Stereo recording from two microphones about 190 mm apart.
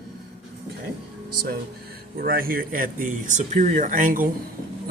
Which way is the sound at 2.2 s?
50° right (ahead or behind).